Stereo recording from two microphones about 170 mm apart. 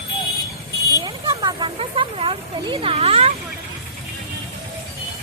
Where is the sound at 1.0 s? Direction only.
25° right (ahead or behind).